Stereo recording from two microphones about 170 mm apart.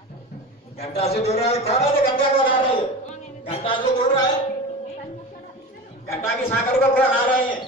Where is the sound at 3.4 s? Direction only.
30° left (ahead or behind).